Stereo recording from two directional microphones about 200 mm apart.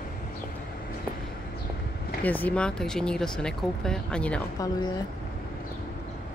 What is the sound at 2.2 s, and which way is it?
Speech, 10° left (ahead or behind).